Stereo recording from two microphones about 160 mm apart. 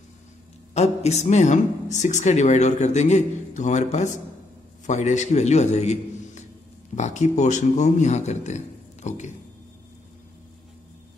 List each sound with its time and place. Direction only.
0.7 s a man's voice: 45° left (ahead or behind)